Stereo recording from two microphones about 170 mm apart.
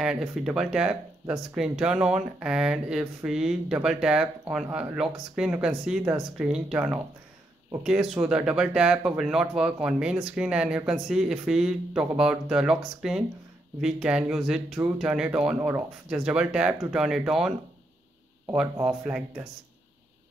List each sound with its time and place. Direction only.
0.0 s speech: 5° right (ahead or behind)
18.8 s speech: 15° right (ahead or behind)